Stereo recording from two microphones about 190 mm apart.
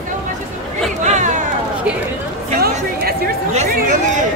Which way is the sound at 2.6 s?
55° right (ahead or behind).